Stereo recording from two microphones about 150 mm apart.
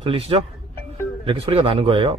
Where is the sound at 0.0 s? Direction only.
35° right (ahead or behind).